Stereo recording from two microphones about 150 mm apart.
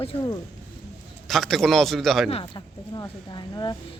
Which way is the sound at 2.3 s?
30° left (ahead or behind).